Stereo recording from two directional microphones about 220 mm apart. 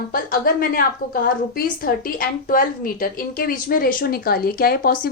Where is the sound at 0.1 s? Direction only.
40° left (ahead or behind).